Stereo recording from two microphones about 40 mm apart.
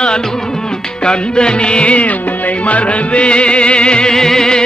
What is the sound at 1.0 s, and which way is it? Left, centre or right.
Music, left.